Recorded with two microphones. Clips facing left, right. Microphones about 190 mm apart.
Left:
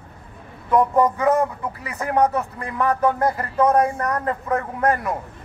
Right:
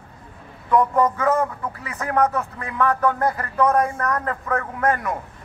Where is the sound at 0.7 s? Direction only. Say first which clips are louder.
Left 1 dB; 20° left (ahead or behind).